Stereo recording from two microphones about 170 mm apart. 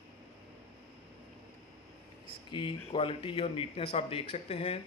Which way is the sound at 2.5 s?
30° left (ahead or behind).